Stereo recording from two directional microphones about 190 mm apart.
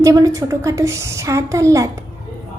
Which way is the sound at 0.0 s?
15° right (ahead or behind).